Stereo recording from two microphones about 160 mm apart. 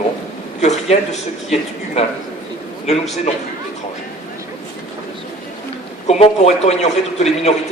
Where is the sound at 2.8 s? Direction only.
45° left (ahead or behind).